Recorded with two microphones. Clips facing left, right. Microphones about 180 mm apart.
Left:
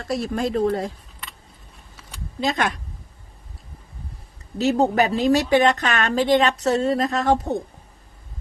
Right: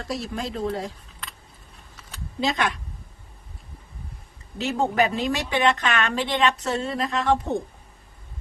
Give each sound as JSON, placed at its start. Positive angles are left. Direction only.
{"t": 0.0, "sound": "speech", "side_deg": 50}
{"t": 2.4, "sound": "speech", "side_deg": 45}
{"t": 4.5, "sound": "a woman's voice", "side_deg": 40}